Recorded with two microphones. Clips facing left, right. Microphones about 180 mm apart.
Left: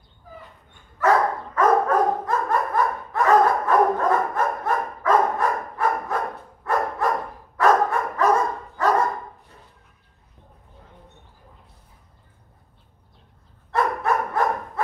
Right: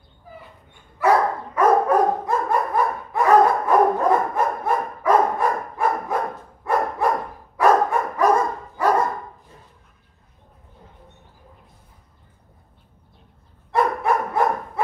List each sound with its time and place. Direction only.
0.9 s dog: 10° right (ahead or behind)
13.7 s dog: 10° right (ahead or behind)